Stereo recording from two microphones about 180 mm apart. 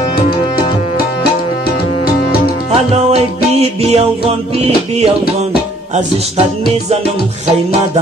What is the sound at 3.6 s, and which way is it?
Music, 35° right (ahead or behind).